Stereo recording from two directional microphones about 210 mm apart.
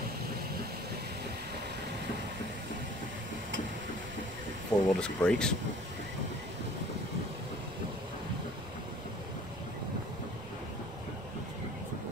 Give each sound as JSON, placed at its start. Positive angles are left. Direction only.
{"t": 4.7, "sound": "speech", "side_deg": 20}
{"t": 5.0, "sound": "speech", "side_deg": 5}